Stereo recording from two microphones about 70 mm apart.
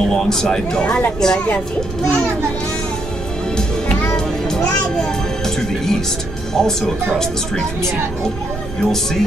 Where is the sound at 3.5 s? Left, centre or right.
Centre.